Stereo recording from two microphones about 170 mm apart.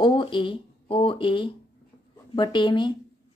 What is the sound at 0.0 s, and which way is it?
A woman's voice, 30° left (ahead or behind).